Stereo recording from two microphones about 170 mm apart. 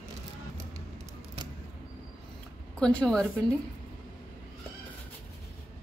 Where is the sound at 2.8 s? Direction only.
5° left (ahead or behind).